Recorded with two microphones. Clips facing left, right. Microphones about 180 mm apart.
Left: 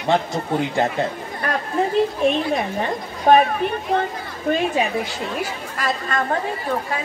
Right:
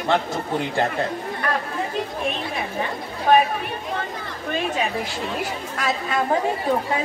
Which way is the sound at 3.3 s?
40° left (ahead or behind).